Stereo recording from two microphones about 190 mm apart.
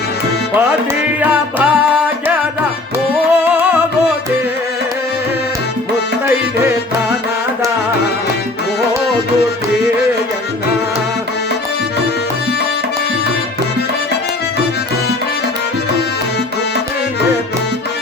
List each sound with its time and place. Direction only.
1.2 s music: 10° right (ahead or behind)
3.5 s music: 10° right (ahead or behind)